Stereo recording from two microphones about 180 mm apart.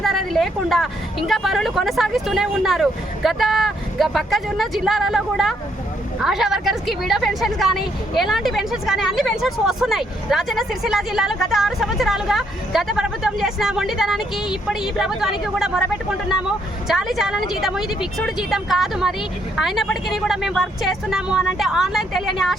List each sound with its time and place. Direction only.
0.0 s speech: centre (ahead or behind)
16.9 s speech: centre (ahead or behind)